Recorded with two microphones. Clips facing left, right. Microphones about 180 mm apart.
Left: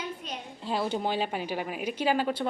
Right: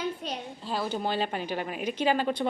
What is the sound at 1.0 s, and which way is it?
A woman's voice, 10° left (ahead or behind).